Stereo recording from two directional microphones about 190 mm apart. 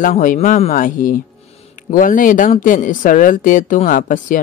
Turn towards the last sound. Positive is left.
turn(degrees=45)  # may be behind; listen again after turning